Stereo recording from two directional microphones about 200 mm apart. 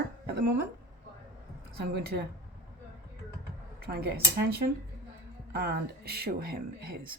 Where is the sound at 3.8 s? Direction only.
50° right (ahead or behind).